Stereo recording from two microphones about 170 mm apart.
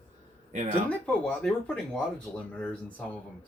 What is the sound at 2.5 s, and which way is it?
Speech, 5° left (ahead or behind).